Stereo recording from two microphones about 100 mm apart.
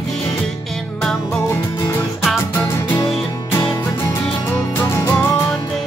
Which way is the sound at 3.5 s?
25° left (ahead or behind).